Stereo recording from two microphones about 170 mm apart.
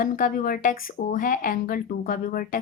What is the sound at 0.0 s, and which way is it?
Speech, 55° left (ahead or behind).